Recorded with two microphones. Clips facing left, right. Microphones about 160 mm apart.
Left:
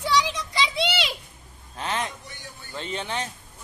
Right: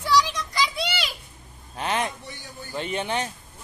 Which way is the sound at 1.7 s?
15° right (ahead or behind).